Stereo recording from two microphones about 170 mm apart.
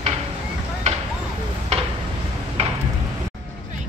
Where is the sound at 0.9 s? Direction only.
45° right (ahead or behind).